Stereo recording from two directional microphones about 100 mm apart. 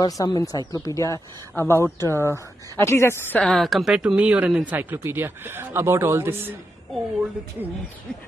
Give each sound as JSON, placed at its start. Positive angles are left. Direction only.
{"t": 0.0, "sound": "speech", "side_deg": 40}
{"t": 3.3, "sound": "a woman's voice", "side_deg": 5}
{"t": 4.7, "sound": "speech", "side_deg": -20}